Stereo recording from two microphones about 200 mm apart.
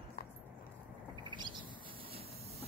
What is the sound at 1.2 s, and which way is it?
Owl, 20° right (ahead or behind).